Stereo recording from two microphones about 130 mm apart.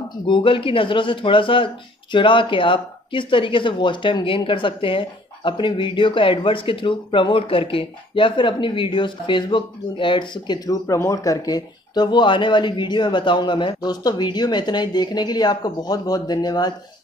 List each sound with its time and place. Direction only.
0.3 s speech: 40° left (ahead or behind)